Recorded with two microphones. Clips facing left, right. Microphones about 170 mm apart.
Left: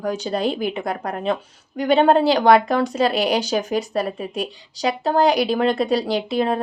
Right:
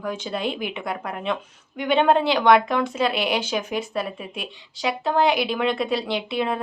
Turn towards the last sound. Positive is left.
turn(degrees=40)  # may be behind; listen again after turning